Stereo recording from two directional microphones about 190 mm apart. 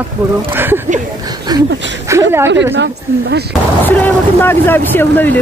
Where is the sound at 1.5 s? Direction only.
20° right (ahead or behind).